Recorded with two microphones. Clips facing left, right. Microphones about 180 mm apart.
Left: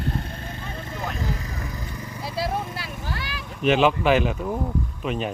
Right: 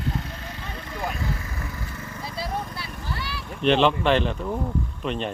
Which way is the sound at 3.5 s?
5° left (ahead or behind).